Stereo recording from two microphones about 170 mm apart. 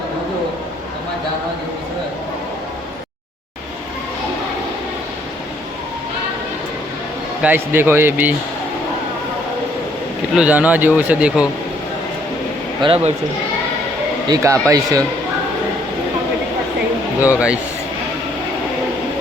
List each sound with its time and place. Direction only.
7.4 s speech: 10° right (ahead or behind)
10.3 s speech: 10° right (ahead or behind)
12.8 s speech: 35° right (ahead or behind)
14.3 s a man's voice: 20° right (ahead or behind)
17.2 s speech: 10° right (ahead or behind)